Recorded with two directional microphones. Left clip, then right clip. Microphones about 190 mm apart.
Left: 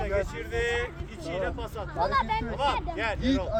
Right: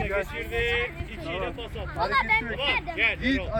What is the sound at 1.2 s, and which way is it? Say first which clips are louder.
Speech: left 1 dB; 30° left (ahead or behind).